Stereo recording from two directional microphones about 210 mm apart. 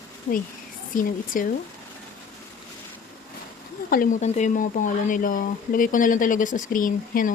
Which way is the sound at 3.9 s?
40° left (ahead or behind).